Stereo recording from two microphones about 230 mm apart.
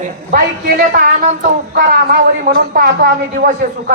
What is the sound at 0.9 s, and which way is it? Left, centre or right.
Speech, right.